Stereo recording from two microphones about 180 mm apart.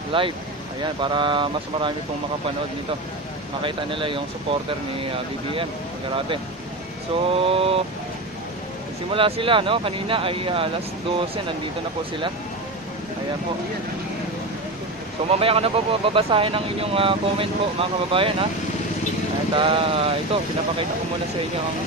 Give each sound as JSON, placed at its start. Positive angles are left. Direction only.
{"t": 0.1, "sound": "speech", "side_deg": -30}
{"t": 3.6, "sound": "speech", "side_deg": -30}
{"t": 6.1, "sound": "speech", "side_deg": -30}
{"t": 9.1, "sound": "speech", "side_deg": -30}
{"t": 15.2, "sound": "speech", "side_deg": -35}
{"t": 19.5, "sound": "speech", "side_deg": -30}